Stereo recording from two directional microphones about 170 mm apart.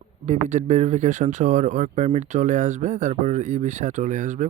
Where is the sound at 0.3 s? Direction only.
45° right (ahead or behind).